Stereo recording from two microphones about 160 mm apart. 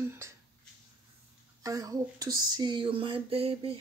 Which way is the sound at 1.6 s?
20° right (ahead or behind).